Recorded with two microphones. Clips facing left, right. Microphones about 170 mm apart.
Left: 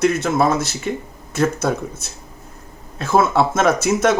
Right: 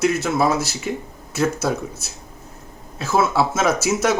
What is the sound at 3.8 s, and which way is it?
Speech, 55° left (ahead or behind).